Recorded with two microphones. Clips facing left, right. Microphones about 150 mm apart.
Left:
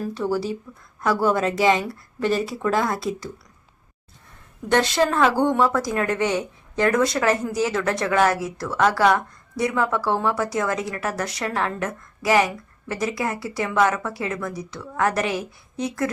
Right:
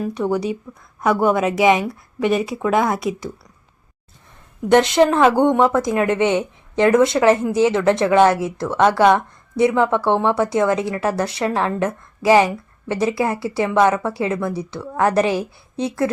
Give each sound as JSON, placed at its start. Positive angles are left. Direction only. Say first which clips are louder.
{"t": 0.0, "sound": "speech", "louder": "right 4 dB", "side_deg": -20}
{"t": 4.7, "sound": "speech", "louder": "right 6 dB", "side_deg": -20}